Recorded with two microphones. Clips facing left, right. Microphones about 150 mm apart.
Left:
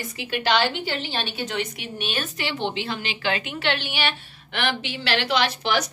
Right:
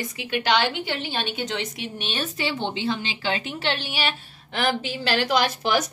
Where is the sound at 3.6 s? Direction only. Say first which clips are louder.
Left 2 dB; 35° right (ahead or behind).